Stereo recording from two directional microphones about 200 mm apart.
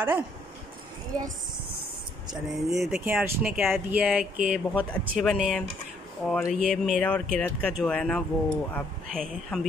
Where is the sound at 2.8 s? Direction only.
5° right (ahead or behind).